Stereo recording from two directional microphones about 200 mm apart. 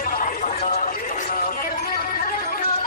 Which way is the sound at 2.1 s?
45° left (ahead or behind).